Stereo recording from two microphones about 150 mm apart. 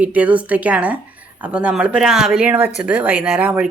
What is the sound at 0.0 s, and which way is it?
Speech, 10° right (ahead or behind).